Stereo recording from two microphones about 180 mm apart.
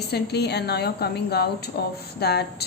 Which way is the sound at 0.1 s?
65° left (ahead or behind).